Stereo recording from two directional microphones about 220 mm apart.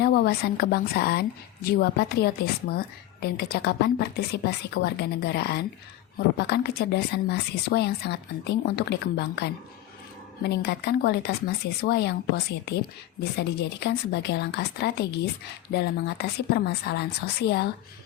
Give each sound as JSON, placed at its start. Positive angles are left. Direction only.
{"t": 0.0, "sound": "a woman's voice", "side_deg": 45}